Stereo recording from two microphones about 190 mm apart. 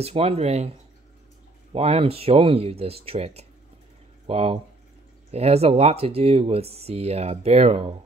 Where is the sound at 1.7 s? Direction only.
30° right (ahead or behind).